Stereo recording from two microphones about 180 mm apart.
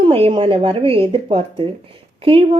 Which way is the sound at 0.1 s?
30° right (ahead or behind).